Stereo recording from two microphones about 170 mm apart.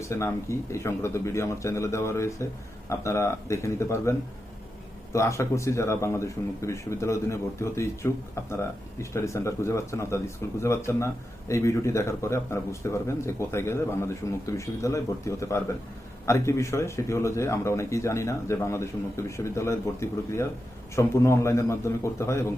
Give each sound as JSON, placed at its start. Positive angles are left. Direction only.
{"t": 0.1, "sound": "speech", "side_deg": 15}
{"t": 5.1, "sound": "speech", "side_deg": 15}